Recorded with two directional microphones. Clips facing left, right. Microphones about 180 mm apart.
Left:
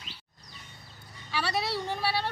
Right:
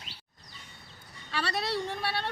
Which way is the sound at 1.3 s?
Centre (ahead or behind).